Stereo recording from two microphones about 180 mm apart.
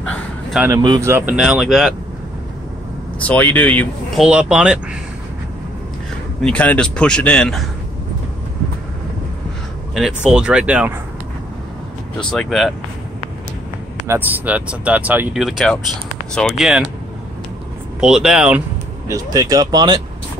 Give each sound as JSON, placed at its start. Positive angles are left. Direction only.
{"t": 0.6, "sound": "speech", "side_deg": -15}
{"t": 3.3, "sound": "speech", "side_deg": 10}
{"t": 4.2, "sound": "a man's voice", "side_deg": -5}
{"t": 6.4, "sound": "a man's voice", "side_deg": 10}
{"t": 9.9, "sound": "a man's voice", "side_deg": -5}
{"t": 12.3, "sound": "a man's voice", "side_deg": 0}
{"t": 14.0, "sound": "a man's voice", "side_deg": -10}
{"t": 18.0, "sound": "a man's voice", "side_deg": -5}
{"t": 19.0, "sound": "speech", "side_deg": -20}